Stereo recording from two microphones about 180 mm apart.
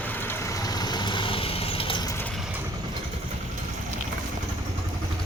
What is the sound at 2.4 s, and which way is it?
Vehicle, 5° right (ahead or behind).